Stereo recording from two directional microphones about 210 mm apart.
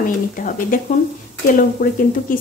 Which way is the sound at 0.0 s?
40° left (ahead or behind).